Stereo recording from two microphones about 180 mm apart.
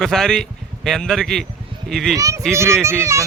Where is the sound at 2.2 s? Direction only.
20° right (ahead or behind).